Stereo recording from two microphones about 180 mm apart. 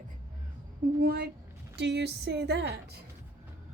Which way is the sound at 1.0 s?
60° right (ahead or behind).